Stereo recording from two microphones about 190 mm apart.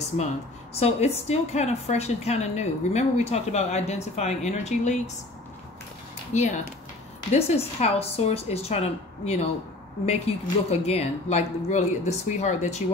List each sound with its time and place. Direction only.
0.7 s a woman's voice: 35° left (ahead or behind)
6.3 s a woman's voice: 40° left (ahead or behind)